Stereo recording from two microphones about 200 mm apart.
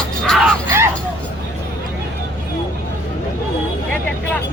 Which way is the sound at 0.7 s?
10° right (ahead or behind).